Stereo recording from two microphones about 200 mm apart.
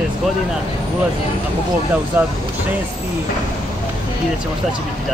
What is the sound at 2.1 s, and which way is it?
Speech, 10° right (ahead or behind).